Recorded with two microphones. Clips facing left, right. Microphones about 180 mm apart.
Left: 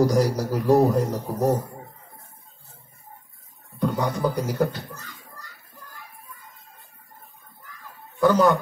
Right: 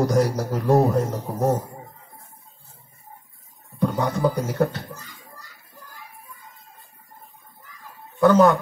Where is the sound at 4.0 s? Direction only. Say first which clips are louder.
Right 3 dB; 25° right (ahead or behind).